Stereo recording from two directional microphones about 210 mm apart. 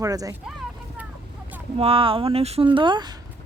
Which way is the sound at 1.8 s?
25° right (ahead or behind).